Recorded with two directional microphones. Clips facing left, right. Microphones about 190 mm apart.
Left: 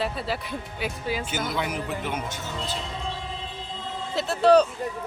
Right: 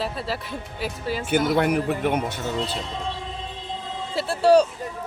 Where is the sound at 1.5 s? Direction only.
60° right (ahead or behind).